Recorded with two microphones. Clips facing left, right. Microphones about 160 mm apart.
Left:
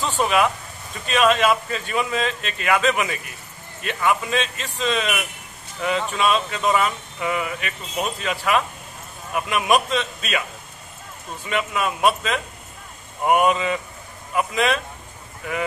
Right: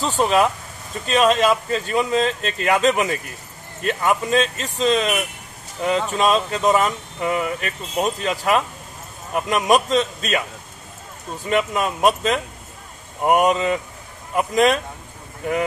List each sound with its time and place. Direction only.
0.0 s speech: 35° right (ahead or behind)
11.4 s speech: 40° right (ahead or behind)